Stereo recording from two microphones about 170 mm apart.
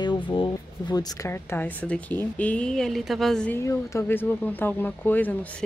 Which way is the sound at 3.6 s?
15° left (ahead or behind).